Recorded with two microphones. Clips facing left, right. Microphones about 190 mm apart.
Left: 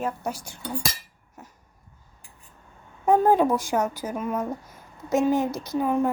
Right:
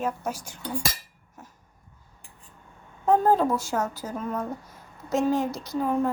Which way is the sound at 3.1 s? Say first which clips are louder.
Left 2 dB; 15° left (ahead or behind).